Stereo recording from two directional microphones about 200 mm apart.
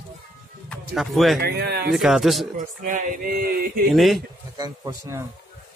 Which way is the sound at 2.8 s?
45° right (ahead or behind).